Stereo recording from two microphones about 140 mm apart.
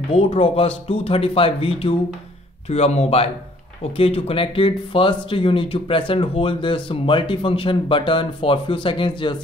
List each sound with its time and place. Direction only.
0.1 s speech: 45° left (ahead or behind)